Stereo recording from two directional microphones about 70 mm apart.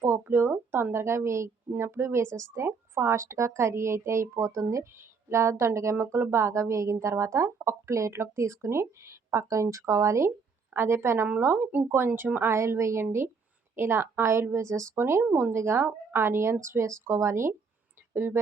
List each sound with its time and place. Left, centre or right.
0.0 s a woman's voice: right
15.5 s speech: right